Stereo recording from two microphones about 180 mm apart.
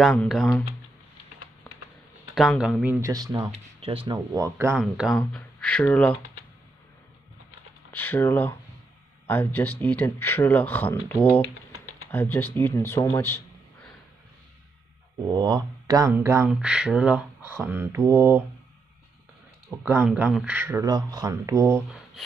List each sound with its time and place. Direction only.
0.0 s speech: centre (ahead or behind)
2.3 s speech: centre (ahead or behind)
2.8 s speech: 15° right (ahead or behind)
3.5 s a sound: 30° right (ahead or behind)
4.1 s speech: 20° right (ahead or behind)
4.7 s speech: centre (ahead or behind)
8.0 s speech: 10° left (ahead or behind)
12.1 s speech: 10° left (ahead or behind)
15.3 s speech: 20° right (ahead or behind)
19.8 s speech: 10° right (ahead or behind)
20.1 s speech: centre (ahead or behind); by 21.8 s 15° right (ahead or behind)